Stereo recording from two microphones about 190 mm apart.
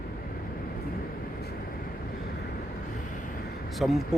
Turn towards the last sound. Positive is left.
turn(degrees=0)  # may be behind; listen again after turning